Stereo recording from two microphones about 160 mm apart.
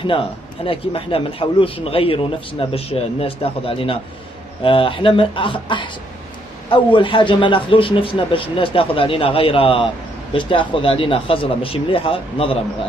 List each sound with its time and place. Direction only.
0.0 s a man's voice: 30° left (ahead or behind)